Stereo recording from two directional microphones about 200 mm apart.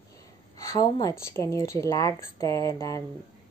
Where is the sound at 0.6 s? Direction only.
15° left (ahead or behind).